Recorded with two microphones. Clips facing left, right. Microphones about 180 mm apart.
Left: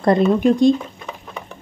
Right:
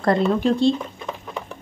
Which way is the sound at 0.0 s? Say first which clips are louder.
Left 4 dB; 20° left (ahead or behind).